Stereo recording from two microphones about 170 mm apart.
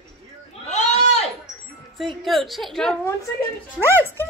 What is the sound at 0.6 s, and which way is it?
Sheep, 40° left (ahead or behind).